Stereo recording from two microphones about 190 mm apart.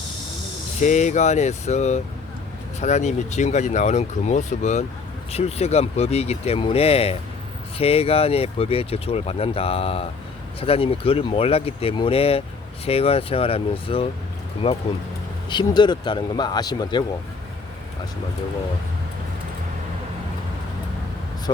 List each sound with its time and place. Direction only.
0.8 s speech: 40° left (ahead or behind); by 17.0 s 20° left (ahead or behind)